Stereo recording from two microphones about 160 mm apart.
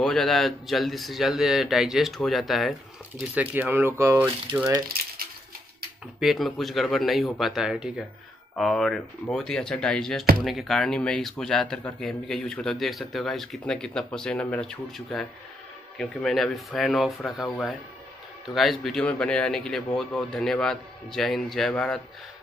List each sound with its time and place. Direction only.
0.0 s speech: 5° left (ahead or behind)
3.3 s speech: 10° right (ahead or behind)
4.9 s typewriter: 70° right (ahead or behind)
6.1 s speech: centre (ahead or behind)